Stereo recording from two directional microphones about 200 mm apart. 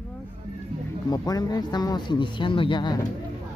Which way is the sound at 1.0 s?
20° left (ahead or behind).